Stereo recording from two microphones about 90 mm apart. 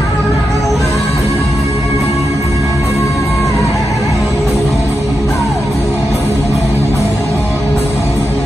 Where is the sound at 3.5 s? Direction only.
35° left (ahead or behind).